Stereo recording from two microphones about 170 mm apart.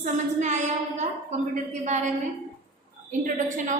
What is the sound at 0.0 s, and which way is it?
A woman's voice, 45° right (ahead or behind).